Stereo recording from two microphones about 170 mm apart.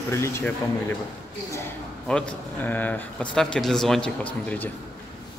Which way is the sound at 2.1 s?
5° left (ahead or behind).